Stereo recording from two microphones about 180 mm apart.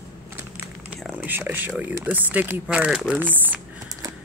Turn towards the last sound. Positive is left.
turn(degrees=-10)  # may be behind; listen again after turning